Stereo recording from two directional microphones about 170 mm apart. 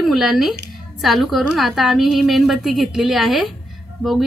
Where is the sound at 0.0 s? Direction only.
Centre (ahead or behind).